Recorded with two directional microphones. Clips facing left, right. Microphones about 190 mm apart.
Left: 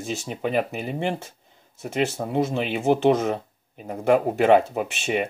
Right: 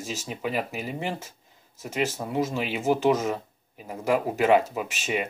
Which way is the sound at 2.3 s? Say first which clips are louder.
Left 3 dB; 60° left (ahead or behind).